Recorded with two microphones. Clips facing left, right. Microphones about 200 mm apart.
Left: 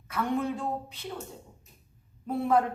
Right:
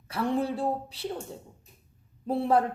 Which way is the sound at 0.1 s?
35° right (ahead or behind).